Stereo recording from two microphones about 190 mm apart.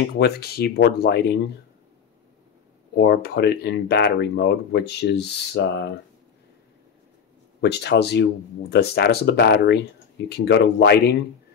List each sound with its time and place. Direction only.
0.1 s speech: 55° left (ahead or behind)
3.0 s speech: 60° left (ahead or behind)
7.6 s speech: 60° left (ahead or behind)